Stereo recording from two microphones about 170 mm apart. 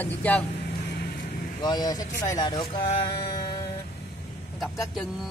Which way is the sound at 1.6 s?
25° left (ahead or behind).